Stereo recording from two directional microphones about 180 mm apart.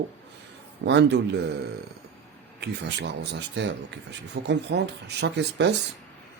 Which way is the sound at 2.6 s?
65° right (ahead or behind).